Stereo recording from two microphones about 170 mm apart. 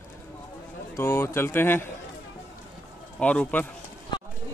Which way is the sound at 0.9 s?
15° left (ahead or behind).